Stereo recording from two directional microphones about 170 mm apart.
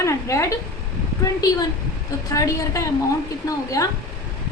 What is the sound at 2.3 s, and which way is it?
A woman's voice, 20° left (ahead or behind).